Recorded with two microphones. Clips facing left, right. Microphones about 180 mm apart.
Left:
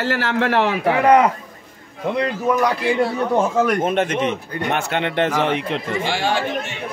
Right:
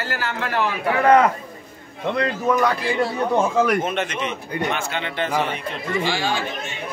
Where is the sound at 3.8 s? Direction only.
50° left (ahead or behind); by 5.8 s 85° left.